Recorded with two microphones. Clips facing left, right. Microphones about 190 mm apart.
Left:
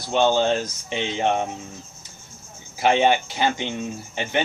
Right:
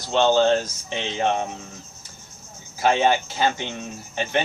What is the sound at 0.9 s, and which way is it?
Speech, 15° left (ahead or behind).